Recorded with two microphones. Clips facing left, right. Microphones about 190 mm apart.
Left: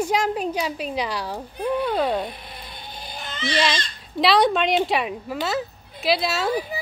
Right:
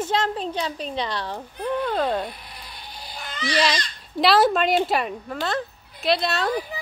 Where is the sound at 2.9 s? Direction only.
20° left (ahead or behind).